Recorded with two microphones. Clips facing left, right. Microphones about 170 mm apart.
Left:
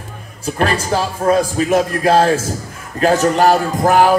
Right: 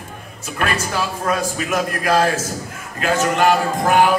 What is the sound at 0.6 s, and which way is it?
A man's voice, 30° left (ahead or behind).